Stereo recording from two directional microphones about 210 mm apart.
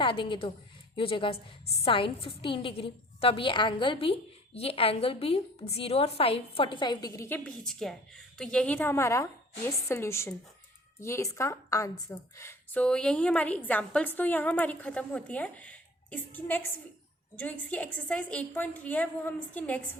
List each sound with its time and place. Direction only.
0.0 s a woman's voice: 25° left (ahead or behind); by 19.9 s 5° left (ahead or behind)